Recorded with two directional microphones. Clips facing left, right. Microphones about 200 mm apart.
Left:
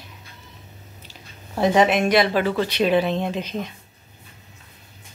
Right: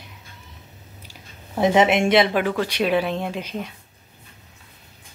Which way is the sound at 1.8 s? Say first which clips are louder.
Right 1 dB; 25° right (ahead or behind).